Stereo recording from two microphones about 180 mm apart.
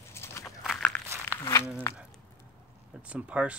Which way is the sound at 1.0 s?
15° right (ahead or behind).